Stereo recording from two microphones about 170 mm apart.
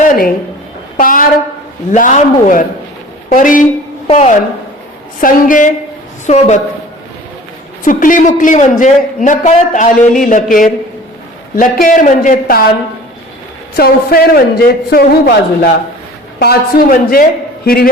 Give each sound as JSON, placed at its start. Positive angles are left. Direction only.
{"t": 0.1, "sound": "a man's voice", "side_deg": 55}
{"t": 4.0, "sound": "a woman's voice", "side_deg": 40}
{"t": 5.2, "sound": "a man's voice", "side_deg": 50}
{"t": 7.9, "sound": "a man's voice", "side_deg": 50}
{"t": 13.7, "sound": "a man's voice", "side_deg": 65}